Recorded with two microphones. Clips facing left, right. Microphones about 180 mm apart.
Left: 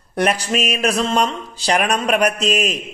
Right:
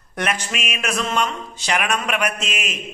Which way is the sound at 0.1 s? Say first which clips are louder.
Left 6 dB; 35° left (ahead or behind).